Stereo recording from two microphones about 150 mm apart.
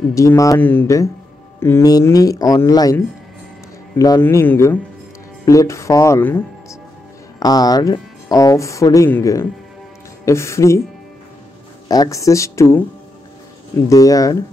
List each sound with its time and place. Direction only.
0.1 s speech: 20° left (ahead or behind)
7.3 s speech: 25° left (ahead or behind)
11.9 s speech: 25° left (ahead or behind)
13.8 s speech: 25° left (ahead or behind)